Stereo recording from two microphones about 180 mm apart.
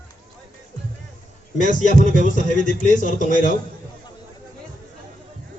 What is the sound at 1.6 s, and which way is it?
A man's voice, 45° left (ahead or behind).